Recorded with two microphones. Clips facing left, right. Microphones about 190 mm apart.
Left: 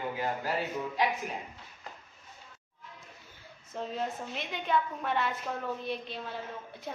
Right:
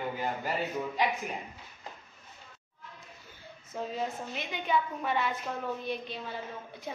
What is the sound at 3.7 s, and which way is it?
A woman's voice, centre (ahead or behind).